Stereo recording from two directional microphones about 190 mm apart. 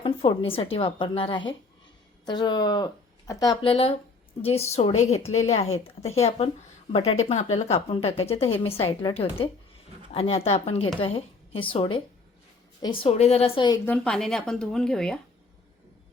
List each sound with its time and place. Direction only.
0.0 s a woman's voice: 30° left (ahead or behind)
13.8 s speech: 5° left (ahead or behind)